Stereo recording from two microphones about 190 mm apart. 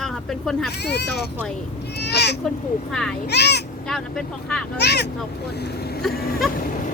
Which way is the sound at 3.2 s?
60° left (ahead or behind).